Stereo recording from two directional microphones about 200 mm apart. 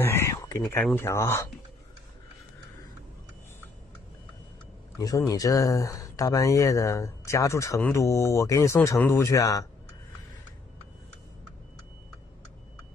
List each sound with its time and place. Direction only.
0.0 s a sound: 10° left (ahead or behind)
0.8 s speech: 10° left (ahead or behind)
4.9 s speech: 15° left (ahead or behind)